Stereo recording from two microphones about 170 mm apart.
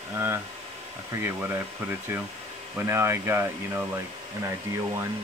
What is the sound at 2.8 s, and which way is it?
Speech, 15° right (ahead or behind).